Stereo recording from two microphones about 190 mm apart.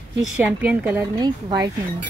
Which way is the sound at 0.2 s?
5° right (ahead or behind).